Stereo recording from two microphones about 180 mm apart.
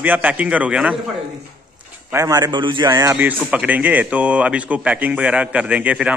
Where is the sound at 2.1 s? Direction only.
15° right (ahead or behind).